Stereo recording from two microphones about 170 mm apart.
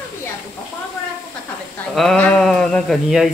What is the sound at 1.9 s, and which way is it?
Speech, 5° left (ahead or behind).